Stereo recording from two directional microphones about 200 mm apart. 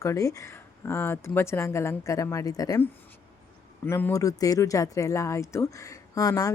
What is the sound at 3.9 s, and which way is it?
Speech, 10° left (ahead or behind).